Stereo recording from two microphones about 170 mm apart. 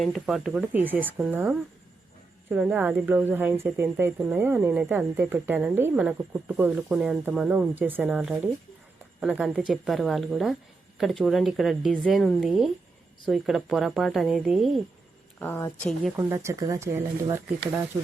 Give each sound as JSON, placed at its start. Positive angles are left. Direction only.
{"t": 0.0, "sound": "a woman's voice", "side_deg": 0}
{"t": 15.4, "sound": "speech", "side_deg": 15}
{"t": 16.1, "sound": "speech", "side_deg": -15}